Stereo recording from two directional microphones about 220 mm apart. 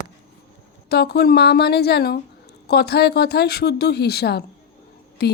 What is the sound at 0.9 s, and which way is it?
Speech, 45° left (ahead or behind).